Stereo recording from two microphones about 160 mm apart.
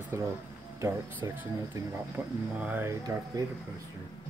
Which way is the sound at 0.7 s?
15° right (ahead or behind).